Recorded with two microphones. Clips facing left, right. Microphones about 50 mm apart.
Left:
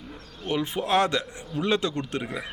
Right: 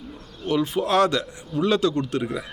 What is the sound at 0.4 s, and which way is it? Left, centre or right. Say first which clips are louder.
A man's voice: right 4 dB; left.